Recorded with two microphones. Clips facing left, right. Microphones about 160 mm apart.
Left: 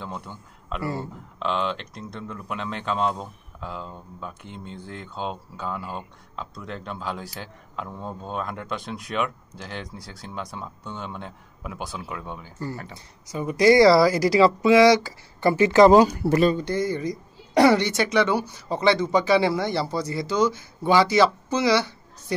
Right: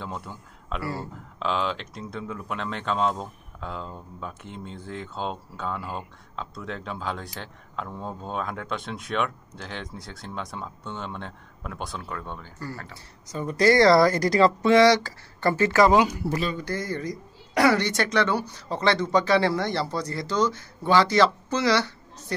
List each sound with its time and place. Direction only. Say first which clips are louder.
0.0 s speech: even; centre (ahead or behind)
12.5 s speech: left 4 dB; 20° left (ahead or behind)
16.8 s speech: left 5 dB; 10° left (ahead or behind)
17.6 s speech: left 4 dB; 25° left (ahead or behind)
17.8 s speech: left 2 dB; 5° left (ahead or behind)